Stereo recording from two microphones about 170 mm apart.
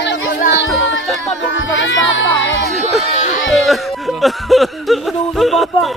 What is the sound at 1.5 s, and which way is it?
Music, 90° left.